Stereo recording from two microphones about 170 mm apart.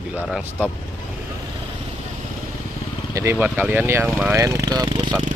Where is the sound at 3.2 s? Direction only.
15° right (ahead or behind).